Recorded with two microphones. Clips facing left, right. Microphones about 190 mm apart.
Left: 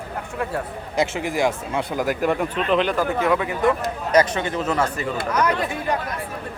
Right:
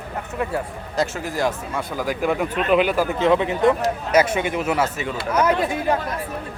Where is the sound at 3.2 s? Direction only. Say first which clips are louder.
Right 3 dB; 25° right (ahead or behind).